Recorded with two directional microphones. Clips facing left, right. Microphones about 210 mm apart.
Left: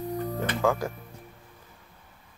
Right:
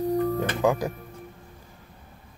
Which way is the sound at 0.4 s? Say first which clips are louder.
Right 2 dB; 15° right (ahead or behind).